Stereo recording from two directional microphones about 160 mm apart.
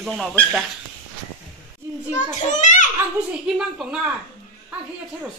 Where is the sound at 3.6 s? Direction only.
5° right (ahead or behind).